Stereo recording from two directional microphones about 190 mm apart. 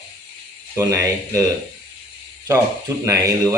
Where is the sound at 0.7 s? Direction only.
15° right (ahead or behind).